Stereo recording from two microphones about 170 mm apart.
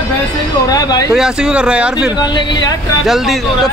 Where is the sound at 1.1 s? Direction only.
5° right (ahead or behind).